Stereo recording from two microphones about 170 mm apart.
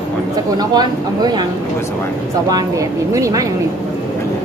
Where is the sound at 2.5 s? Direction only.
20° right (ahead or behind).